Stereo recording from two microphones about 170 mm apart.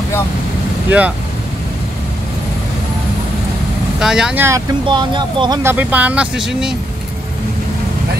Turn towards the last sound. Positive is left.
turn(degrees=-5)  # may be behind; listen again after turning